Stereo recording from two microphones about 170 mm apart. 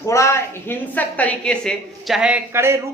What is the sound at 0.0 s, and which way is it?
A woman's voice, 15° left (ahead or behind).